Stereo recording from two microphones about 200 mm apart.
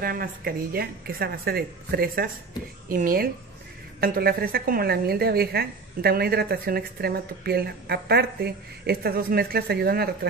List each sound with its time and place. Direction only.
0.0 s a woman's voice: 45° right (ahead or behind)